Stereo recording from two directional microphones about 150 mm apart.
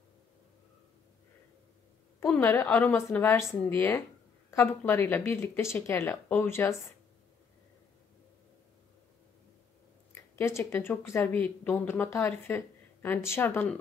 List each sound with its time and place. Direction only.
2.1 s speech: 15° left (ahead or behind)
10.3 s speech: 15° left (ahead or behind)